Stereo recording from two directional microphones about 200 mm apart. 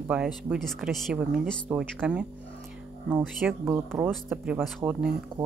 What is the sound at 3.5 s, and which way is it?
A woman's voice, 10° right (ahead or behind).